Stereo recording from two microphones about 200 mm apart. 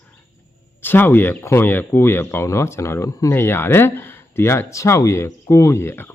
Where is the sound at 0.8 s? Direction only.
10° left (ahead or behind).